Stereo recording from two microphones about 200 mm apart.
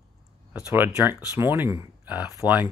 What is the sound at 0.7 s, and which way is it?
Speech, 10° right (ahead or behind).